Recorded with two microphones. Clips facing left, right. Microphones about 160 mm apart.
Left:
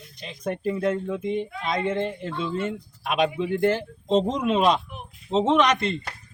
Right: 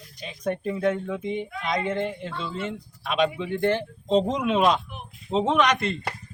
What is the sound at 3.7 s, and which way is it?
Speech, centre (ahead or behind).